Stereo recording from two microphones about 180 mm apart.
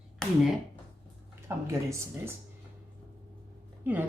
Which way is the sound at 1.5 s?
15° right (ahead or behind).